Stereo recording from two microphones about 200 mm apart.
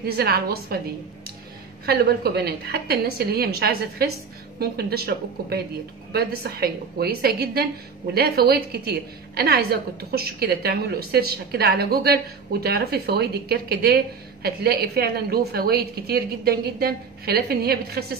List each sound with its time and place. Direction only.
0.0 s a woman's voice: 50° right (ahead or behind)
1.9 s a woman's voice: 50° right (ahead or behind)